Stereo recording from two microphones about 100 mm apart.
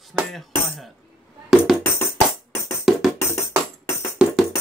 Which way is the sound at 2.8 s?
Centre (ahead or behind).